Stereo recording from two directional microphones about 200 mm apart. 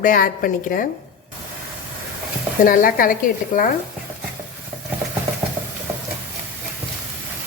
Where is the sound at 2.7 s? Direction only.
45° left (ahead or behind).